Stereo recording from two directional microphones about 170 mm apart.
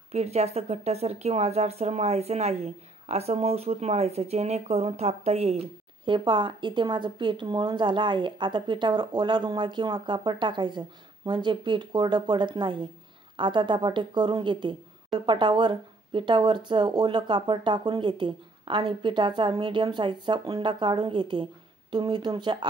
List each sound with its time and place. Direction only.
0.1 s speech: 40° right (ahead or behind)
6.0 s speech: 30° right (ahead or behind)